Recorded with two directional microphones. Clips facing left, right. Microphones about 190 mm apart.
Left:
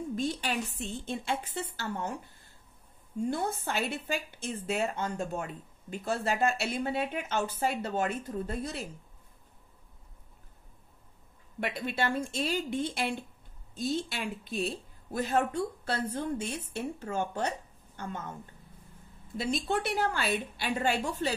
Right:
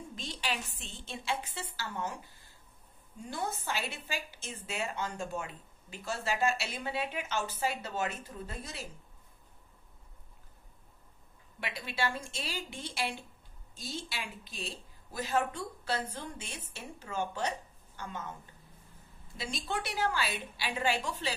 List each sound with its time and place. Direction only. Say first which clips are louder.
0.1 s a woman's voice: left 6 dB; 50° left (ahead or behind)
3.3 s a woman's voice: left 4 dB; 55° left (ahead or behind)
11.6 s a woman's voice: left 4 dB; 50° left (ahead or behind)
19.3 s a woman's voice: left 7 dB; 55° left (ahead or behind)